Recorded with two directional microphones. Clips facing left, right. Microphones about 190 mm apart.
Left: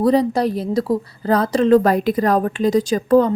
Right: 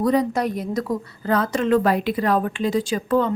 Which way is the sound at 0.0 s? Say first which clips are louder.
Left 4 dB; 35° left (ahead or behind).